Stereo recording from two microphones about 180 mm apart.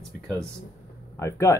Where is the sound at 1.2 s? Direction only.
15° left (ahead or behind).